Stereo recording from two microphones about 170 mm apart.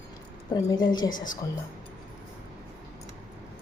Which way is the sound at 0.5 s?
25° left (ahead or behind).